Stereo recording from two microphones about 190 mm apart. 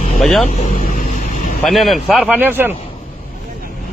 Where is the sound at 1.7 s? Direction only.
Centre (ahead or behind).